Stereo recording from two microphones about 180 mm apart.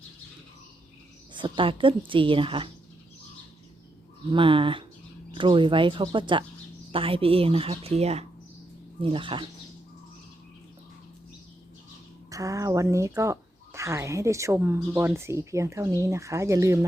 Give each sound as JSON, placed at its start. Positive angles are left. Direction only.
{"t": 1.3, "sound": "a woman's voice", "side_deg": -25}
{"t": 4.3, "sound": "a woman's voice", "side_deg": -30}
{"t": 12.3, "sound": "speech", "side_deg": -20}